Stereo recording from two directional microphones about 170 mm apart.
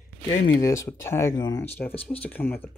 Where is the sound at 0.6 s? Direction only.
20° left (ahead or behind).